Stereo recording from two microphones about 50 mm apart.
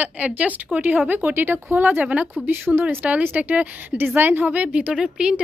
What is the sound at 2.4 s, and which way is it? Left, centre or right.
Speech, right.